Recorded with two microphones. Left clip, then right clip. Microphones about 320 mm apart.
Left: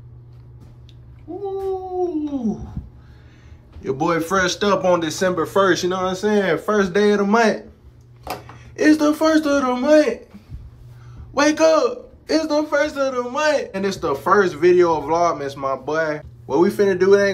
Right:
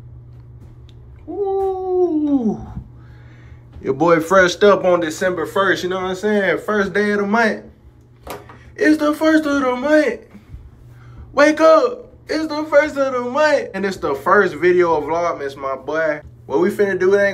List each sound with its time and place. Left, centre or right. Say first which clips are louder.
1.4 s howl: right 6 dB; centre
3.8 s a man's voice: right 6 dB; centre
8.7 s speech: even; centre
11.3 s a man's voice: right 4 dB; centre